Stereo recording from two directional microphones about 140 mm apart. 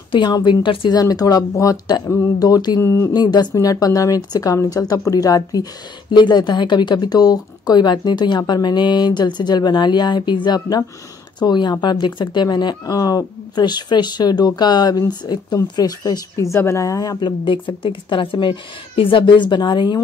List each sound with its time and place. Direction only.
0.1 s speech: 30° left (ahead or behind)